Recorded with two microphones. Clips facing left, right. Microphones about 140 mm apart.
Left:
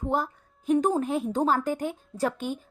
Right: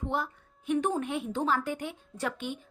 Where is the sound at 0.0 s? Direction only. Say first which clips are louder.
Left 5 dB; 40° left (ahead or behind).